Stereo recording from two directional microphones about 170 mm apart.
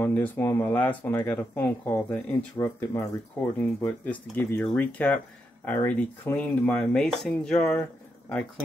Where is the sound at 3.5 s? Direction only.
10° left (ahead or behind).